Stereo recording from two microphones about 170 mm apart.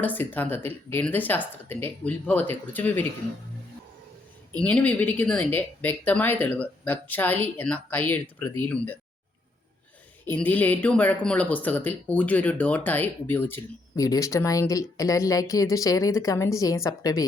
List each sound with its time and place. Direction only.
0.0 s speech: 10° left (ahead or behind)
4.6 s speech: 10° left (ahead or behind)
10.2 s speech: 10° left (ahead or behind)